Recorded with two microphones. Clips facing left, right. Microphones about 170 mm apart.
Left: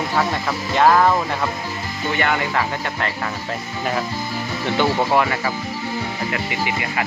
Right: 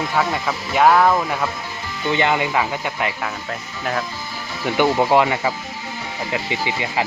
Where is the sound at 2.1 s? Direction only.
20° right (ahead or behind).